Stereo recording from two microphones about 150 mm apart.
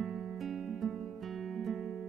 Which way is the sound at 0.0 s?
Centre (ahead or behind).